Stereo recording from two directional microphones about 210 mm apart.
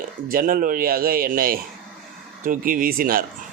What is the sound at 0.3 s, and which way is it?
Speech, 45° right (ahead or behind).